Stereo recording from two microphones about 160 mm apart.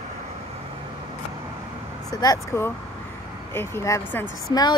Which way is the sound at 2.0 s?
25° left (ahead or behind).